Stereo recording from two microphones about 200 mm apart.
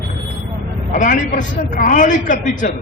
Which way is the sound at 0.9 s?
40° left (ahead or behind).